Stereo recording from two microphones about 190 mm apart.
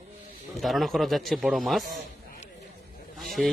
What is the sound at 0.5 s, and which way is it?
A man's voice, centre (ahead or behind).